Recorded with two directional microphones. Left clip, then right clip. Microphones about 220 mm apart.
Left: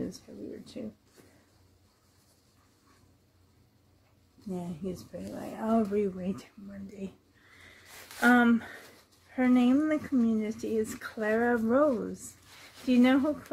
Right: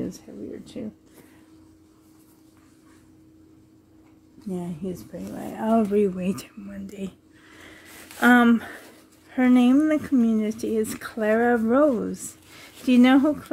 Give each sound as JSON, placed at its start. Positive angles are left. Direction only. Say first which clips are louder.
{"t": 0.3, "sound": "a sound", "louder": "right 6 dB", "side_deg": -25}
{"t": 0.8, "sound": "speech", "louder": "right 6 dB", "side_deg": -30}
{"t": 4.5, "sound": "speech", "louder": "right 5 dB", "side_deg": -30}
{"t": 8.2, "sound": "speech", "louder": "right 6 dB", "side_deg": -45}